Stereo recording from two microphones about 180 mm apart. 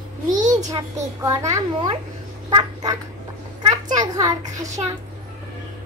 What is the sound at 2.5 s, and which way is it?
Quack, 25° right (ahead or behind).